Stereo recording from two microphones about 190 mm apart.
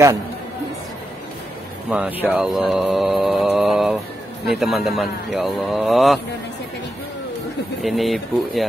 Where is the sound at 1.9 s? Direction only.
5° right (ahead or behind).